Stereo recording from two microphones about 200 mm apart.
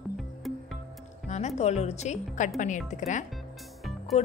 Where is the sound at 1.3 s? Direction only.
35° left (ahead or behind).